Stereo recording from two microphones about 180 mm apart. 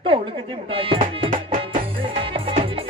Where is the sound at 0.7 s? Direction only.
30° right (ahead or behind).